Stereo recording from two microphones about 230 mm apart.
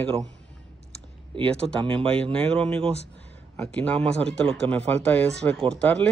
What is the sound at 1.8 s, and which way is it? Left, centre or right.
Speech, right.